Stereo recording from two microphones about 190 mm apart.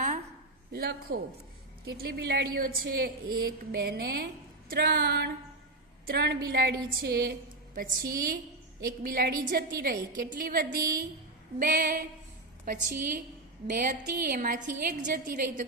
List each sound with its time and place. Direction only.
0.7 s a woman's voice: 55° right (ahead or behind)